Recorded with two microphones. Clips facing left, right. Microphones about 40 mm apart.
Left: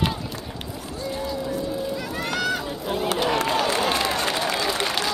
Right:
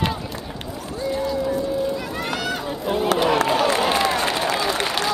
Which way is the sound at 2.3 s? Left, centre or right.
Centre.